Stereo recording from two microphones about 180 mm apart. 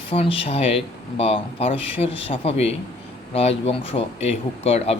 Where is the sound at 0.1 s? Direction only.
30° left (ahead or behind).